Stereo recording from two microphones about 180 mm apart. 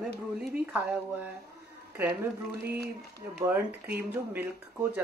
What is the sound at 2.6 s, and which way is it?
Speech, 60° right (ahead or behind).